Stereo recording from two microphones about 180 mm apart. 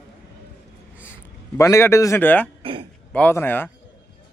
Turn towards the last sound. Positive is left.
turn(degrees=10)  # may be behind; listen again after turning